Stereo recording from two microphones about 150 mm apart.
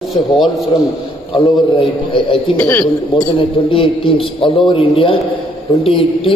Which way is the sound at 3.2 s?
35° left (ahead or behind).